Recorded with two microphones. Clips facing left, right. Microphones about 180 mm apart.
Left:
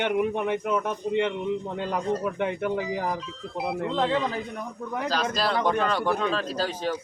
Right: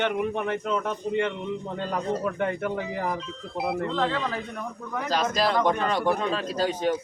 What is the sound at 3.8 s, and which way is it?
Speech, 20° left (ahead or behind).